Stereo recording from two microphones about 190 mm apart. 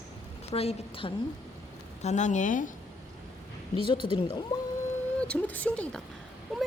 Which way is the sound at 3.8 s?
25° left (ahead or behind).